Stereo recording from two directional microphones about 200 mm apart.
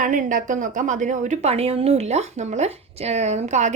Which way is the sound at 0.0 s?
40° right (ahead or behind).